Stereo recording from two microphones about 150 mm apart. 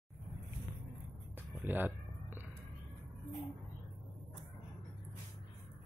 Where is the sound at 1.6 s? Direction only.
15° right (ahead or behind).